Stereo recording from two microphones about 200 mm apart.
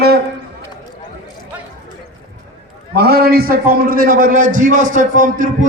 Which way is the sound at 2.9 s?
50° right (ahead or behind).